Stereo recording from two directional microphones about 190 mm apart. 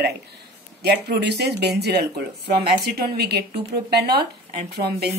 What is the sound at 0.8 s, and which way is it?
Speech, 60° right (ahead or behind).